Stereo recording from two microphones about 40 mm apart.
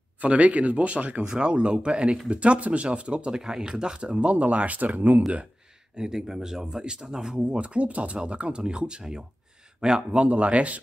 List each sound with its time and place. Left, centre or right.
0.2 s speech: right
1.2 s speech: right
5.9 s speech: centre
7.5 s speech: right
10.2 s speech: right